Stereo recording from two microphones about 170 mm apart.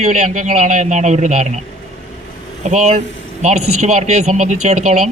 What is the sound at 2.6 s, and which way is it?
Speech, 45° right (ahead or behind).